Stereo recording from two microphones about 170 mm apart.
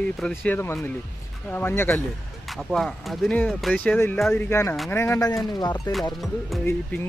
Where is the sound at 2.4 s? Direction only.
Centre (ahead or behind); by 5.8 s 25° left (ahead or behind).